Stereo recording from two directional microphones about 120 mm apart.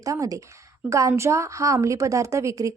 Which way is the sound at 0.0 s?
30° right (ahead or behind).